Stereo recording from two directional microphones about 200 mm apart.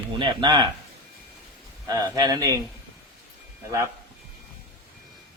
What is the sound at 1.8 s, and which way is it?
Speech, 15° right (ahead or behind).